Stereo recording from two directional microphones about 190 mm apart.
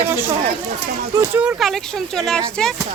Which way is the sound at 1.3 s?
5° right (ahead or behind).